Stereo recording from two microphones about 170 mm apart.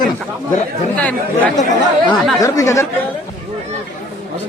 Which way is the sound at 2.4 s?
20° left (ahead or behind).